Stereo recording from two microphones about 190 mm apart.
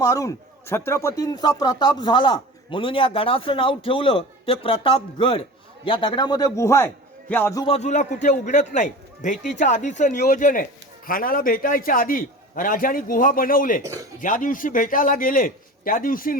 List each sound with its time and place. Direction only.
0.0 s speech: 15° left (ahead or behind)
7.6 s a man's voice: 35° left (ahead or behind)
13.8 s speech: 15° right (ahead or behind)
14.2 s a man's voice: 45° left (ahead or behind)